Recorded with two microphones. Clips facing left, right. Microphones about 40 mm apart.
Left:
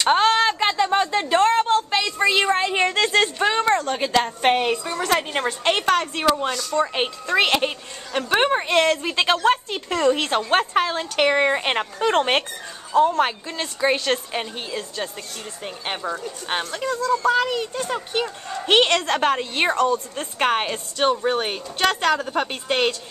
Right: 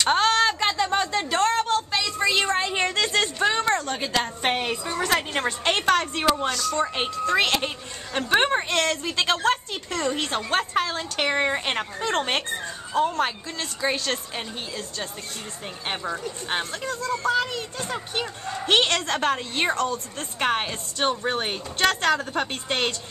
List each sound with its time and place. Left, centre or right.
0.0 s a sound: centre
1.9 s a woman's voice: left
8.2 s a woman's voice: centre
12.9 s a woman's voice: centre
13.2 s a woman's voice: left
15.6 s a woman's voice: centre
16.4 s a woman's voice: centre
18.7 s a woman's voice: centre
21.0 s a woman's voice: centre